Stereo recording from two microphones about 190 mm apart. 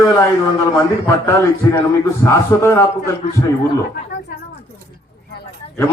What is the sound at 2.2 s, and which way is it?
Speech, 15° left (ahead or behind).